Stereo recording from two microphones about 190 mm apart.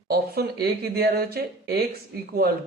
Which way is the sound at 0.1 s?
55° right (ahead or behind).